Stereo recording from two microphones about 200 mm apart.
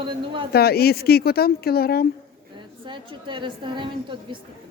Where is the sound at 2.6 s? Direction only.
25° right (ahead or behind).